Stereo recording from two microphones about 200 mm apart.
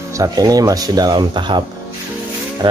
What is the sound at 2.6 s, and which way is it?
Music, 25° right (ahead or behind).